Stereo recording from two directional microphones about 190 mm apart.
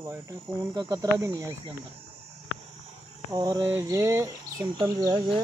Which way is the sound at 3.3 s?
20° right (ahead or behind).